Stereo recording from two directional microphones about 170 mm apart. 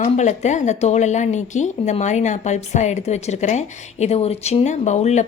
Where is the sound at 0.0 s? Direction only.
45° left (ahead or behind).